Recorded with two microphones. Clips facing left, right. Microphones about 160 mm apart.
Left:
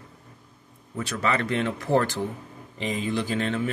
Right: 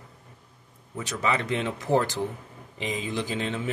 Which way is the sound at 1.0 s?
15° right (ahead or behind).